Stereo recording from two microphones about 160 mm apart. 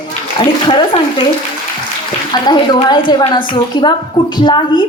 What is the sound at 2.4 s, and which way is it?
A woman's voice, 25° left (ahead or behind).